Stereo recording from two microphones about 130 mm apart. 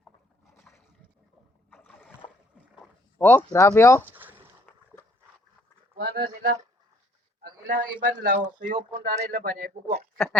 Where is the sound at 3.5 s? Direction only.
25° left (ahead or behind).